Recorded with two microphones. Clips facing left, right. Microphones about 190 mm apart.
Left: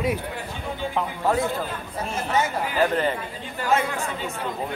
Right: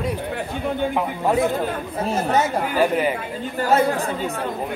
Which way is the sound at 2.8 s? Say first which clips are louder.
Right 2 dB; 10° right (ahead or behind).